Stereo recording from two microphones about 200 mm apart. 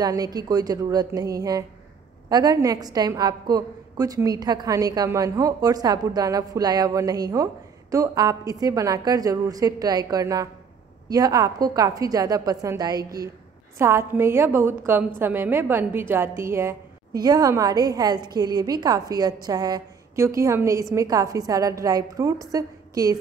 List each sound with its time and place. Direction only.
0.0 s a woman's voice: 20° right (ahead or behind)